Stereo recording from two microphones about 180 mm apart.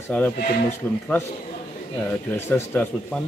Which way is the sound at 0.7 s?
10° left (ahead or behind).